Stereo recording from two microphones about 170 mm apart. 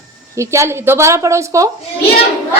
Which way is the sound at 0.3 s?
15° right (ahead or behind).